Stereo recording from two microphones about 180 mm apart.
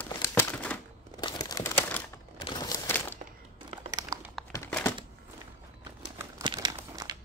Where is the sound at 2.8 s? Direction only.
10° left (ahead or behind).